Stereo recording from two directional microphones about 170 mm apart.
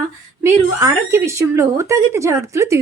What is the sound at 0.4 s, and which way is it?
A woman's voice, 15° right (ahead or behind).